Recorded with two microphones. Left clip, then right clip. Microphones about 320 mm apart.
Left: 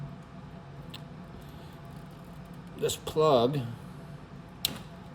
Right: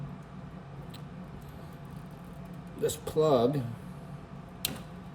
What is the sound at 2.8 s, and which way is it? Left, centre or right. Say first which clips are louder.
Speech: left 1 dB; centre.